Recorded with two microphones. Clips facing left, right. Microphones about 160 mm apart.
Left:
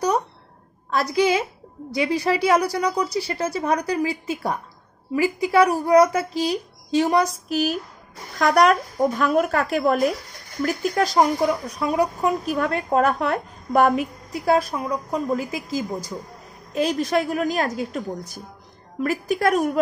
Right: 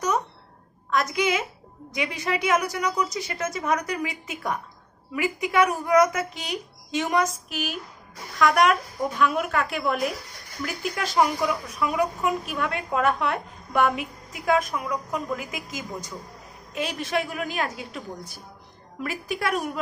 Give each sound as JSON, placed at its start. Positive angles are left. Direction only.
{"t": 0.8, "sound": "a woman's voice", "side_deg": 35}